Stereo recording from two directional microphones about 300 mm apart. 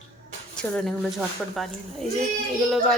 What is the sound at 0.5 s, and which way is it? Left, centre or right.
Speech, centre.